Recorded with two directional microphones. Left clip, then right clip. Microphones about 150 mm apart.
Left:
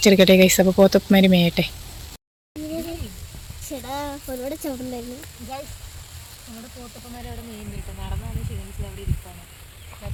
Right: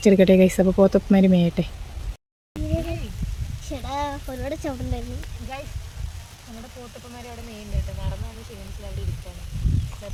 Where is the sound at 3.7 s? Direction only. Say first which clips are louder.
Left 1 dB; 75° left (ahead or behind).